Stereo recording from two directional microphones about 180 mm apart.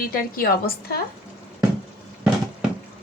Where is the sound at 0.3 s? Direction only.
55° left (ahead or behind).